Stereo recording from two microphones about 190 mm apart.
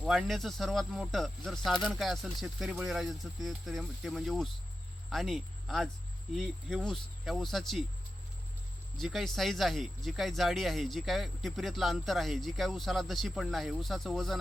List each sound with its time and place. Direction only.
0.0 s speech: centre (ahead or behind)
9.0 s speech: centre (ahead or behind)